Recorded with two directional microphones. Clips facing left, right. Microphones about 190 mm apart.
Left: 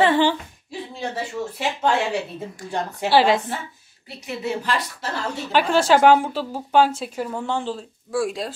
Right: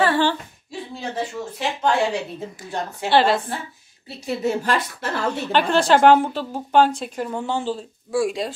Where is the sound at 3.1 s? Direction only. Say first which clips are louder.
Even; 10° left (ahead or behind).